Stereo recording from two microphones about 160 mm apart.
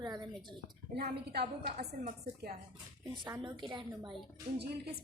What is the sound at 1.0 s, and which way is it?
Speech, 90° right.